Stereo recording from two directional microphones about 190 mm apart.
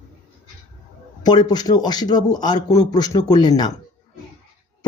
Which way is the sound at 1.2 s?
20° left (ahead or behind).